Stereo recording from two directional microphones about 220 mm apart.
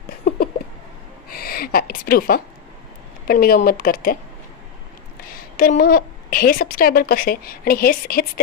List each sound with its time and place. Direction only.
1.3 s a sound: 45° left (ahead or behind)
3.3 s a woman's voice: 40° left (ahead or behind)
5.3 s a woman's voice: 40° left (ahead or behind)